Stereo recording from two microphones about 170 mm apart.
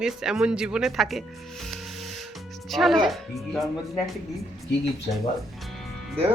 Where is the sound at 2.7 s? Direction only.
Centre (ahead or behind).